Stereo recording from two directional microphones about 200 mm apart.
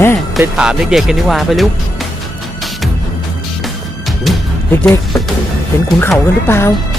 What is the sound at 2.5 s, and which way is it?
Music, centre (ahead or behind).